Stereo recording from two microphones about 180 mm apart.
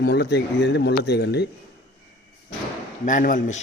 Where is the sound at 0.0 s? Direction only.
65° left (ahead or behind).